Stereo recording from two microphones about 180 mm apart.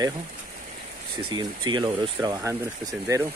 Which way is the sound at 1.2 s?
25° right (ahead or behind).